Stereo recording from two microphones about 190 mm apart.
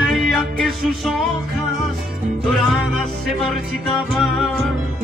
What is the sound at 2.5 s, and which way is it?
Music, centre (ahead or behind).